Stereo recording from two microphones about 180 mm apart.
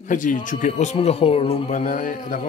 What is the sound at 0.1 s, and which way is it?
Music, 45° left (ahead or behind).